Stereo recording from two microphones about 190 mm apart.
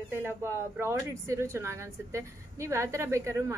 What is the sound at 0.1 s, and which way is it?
Speech, 15° right (ahead or behind).